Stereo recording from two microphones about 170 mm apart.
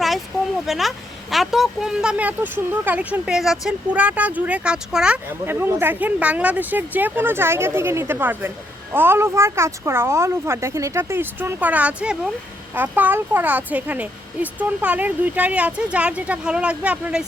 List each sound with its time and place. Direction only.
0.7 s speech: centre (ahead or behind)